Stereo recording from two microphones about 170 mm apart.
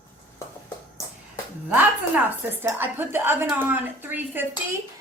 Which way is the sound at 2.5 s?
10° right (ahead or behind).